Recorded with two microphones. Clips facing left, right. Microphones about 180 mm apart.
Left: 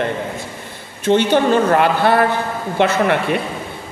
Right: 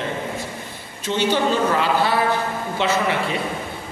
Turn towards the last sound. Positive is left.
turn(degrees=60)  # may be behind; listen again after turning